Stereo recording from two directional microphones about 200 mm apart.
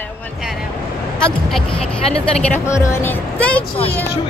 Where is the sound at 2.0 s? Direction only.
30° left (ahead or behind).